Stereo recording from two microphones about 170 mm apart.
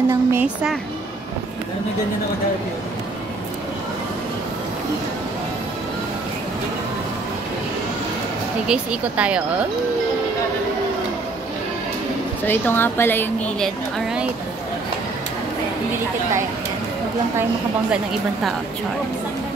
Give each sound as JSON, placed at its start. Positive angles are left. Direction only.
{"t": 0.1, "sound": "speech", "side_deg": -15}
{"t": 8.6, "sound": "speech", "side_deg": -5}
{"t": 12.4, "sound": "a woman's voice", "side_deg": 10}